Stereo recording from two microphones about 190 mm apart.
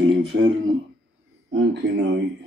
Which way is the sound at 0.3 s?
70° right (ahead or behind).